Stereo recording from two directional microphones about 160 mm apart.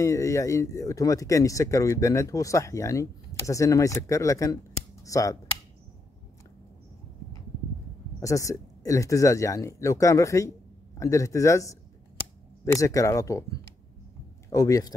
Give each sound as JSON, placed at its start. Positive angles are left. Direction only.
{"t": 0.0, "sound": "speech", "side_deg": 20}
{"t": 8.2, "sound": "speech", "side_deg": 20}
{"t": 12.7, "sound": "speech", "side_deg": 20}